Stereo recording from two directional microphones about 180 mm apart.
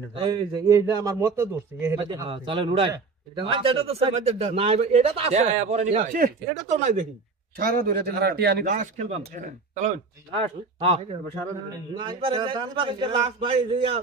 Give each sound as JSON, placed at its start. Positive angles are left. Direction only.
{"t": 0.1, "sound": "a man's voice", "side_deg": -25}
{"t": 2.0, "sound": "a man's voice", "side_deg": -25}
{"t": 7.5, "sound": "a man's voice", "side_deg": -55}
{"t": 8.6, "sound": "a man's voice", "side_deg": -45}